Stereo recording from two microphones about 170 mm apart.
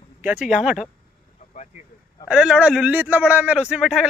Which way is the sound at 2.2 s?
5° right (ahead or behind).